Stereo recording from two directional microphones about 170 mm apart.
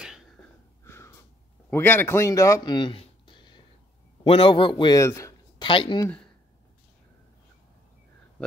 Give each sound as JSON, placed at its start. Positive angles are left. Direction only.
{"t": 0.8, "sound": "wheeze", "side_deg": 15}
{"t": 1.7, "sound": "a man's voice", "side_deg": 15}
{"t": 5.7, "sound": "speech", "side_deg": 30}